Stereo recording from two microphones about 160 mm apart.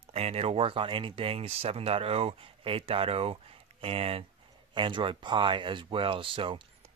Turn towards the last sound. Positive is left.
turn(degrees=-30)  # may be behind; listen again after turning